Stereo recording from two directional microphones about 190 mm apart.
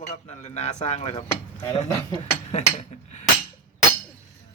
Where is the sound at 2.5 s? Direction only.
40° left (ahead or behind).